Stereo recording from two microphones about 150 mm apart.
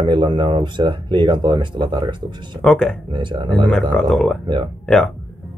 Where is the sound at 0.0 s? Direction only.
35° right (ahead or behind).